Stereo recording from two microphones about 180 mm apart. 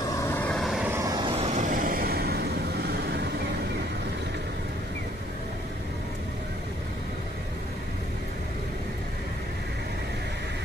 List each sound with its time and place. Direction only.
0.2 s vehicle: 10° left (ahead or behind)
0.9 s vehicle: 20° right (ahead or behind)
1.3 s vehicle: 40° right (ahead or behind); by 3.3 s 60° right (ahead or behind)